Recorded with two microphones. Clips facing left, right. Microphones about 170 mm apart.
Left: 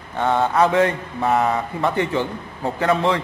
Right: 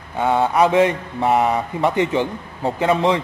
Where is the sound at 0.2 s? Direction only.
10° right (ahead or behind).